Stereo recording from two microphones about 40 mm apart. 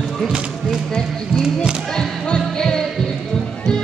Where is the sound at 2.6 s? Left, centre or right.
Centre.